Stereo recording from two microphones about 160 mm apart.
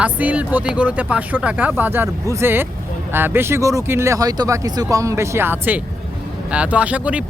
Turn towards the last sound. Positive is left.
turn(degrees=-10)  # may be behind; listen again after turning